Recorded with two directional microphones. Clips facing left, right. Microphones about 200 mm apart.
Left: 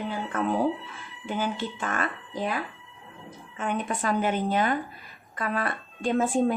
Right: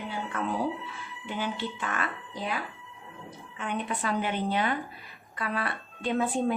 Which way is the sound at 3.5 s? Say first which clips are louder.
Left 3 dB; 45° left (ahead or behind).